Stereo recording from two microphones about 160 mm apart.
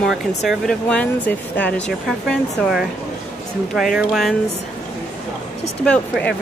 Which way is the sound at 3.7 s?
Centre (ahead or behind).